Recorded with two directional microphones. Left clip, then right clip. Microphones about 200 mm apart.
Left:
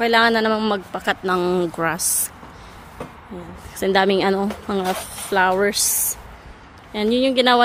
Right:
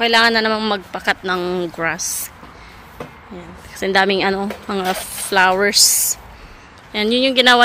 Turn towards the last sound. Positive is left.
turn(degrees=5)  # may be behind; listen again after turning